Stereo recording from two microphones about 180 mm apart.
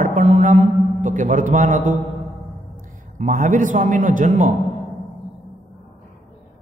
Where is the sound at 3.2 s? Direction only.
45° right (ahead or behind).